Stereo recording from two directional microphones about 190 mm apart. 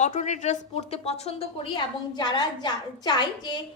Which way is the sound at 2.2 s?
20° left (ahead or behind).